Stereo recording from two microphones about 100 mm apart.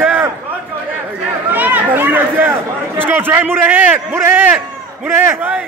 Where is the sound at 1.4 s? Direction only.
20° right (ahead or behind).